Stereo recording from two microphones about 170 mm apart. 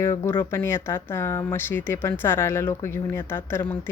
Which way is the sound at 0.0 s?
15° left (ahead or behind).